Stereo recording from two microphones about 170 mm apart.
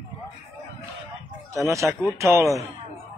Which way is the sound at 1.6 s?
15° right (ahead or behind).